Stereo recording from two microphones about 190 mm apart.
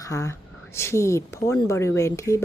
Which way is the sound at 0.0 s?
15° left (ahead or behind).